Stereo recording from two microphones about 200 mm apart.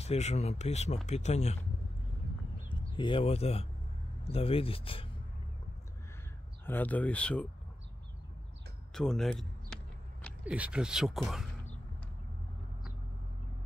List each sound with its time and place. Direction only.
0.0 s speech: 35° left (ahead or behind)
3.0 s speech: 25° left (ahead or behind)
6.6 s speech: 10° left (ahead or behind)
8.9 s speech: centre (ahead or behind)